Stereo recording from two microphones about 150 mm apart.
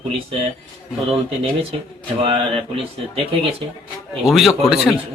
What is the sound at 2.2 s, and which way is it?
Speech, 35° right (ahead or behind).